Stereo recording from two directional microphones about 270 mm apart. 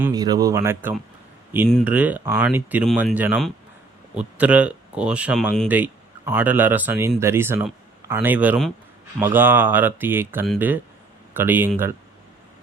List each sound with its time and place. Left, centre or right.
0.0 s speech: centre